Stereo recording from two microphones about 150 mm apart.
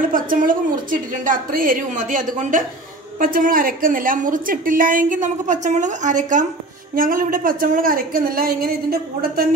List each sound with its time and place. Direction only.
0.1 s a woman's voice: 65° right (ahead or behind)
7.0 s a woman's voice: 70° right (ahead or behind); by 9.5 s 85° right